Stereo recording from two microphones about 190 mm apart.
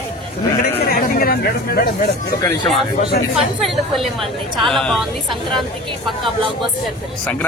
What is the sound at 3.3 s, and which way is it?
A man's voice, centre (ahead or behind).